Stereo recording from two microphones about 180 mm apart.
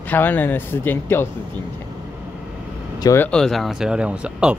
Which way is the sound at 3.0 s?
15° left (ahead or behind).